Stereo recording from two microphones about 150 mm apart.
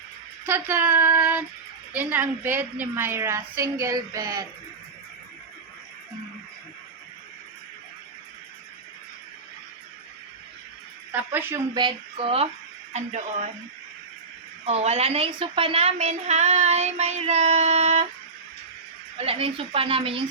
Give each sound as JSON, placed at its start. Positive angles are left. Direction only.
{"t": 0.4, "sound": "a woman's voice", "side_deg": -15}
{"t": 11.1, "sound": "a woman's voice", "side_deg": -10}
{"t": 11.7, "sound": "speech", "side_deg": -30}
{"t": 12.9, "sound": "a woman's voice", "side_deg": -50}
{"t": 14.6, "sound": "a woman's voice", "side_deg": -45}
{"t": 19.1, "sound": "speech", "side_deg": -40}